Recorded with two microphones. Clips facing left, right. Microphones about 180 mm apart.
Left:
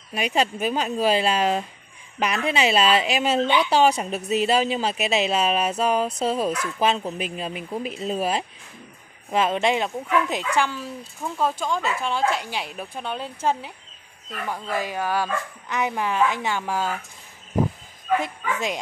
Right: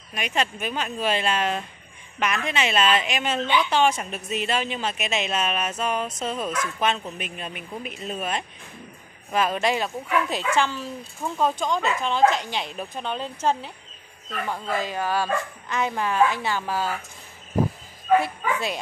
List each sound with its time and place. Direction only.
0.1 s speech: 35° left (ahead or behind); by 13.7 s 10° left (ahead or behind)
14.7 s speech: 10° left (ahead or behind)
18.2 s speech: 15° left (ahead or behind)